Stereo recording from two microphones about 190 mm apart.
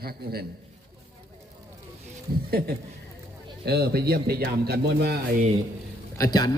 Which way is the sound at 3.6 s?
55° right (ahead or behind).